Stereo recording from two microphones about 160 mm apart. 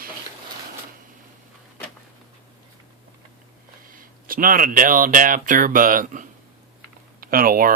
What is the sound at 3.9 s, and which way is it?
Speech, 60° right (ahead or behind).